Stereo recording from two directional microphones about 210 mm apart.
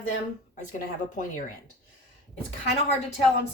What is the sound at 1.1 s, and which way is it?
Speech, 40° left (ahead or behind).